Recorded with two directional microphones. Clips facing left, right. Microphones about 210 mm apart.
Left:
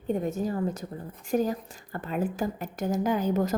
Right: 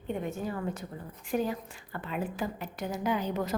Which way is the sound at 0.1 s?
40° left (ahead or behind).